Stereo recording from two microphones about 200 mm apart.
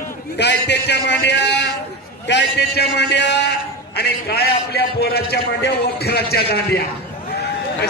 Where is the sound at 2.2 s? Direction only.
55° left (ahead or behind).